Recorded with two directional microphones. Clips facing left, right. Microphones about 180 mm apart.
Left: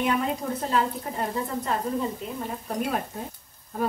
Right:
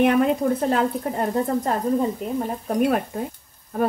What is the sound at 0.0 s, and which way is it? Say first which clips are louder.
Speech: right 8 dB; 60° right (ahead or behind).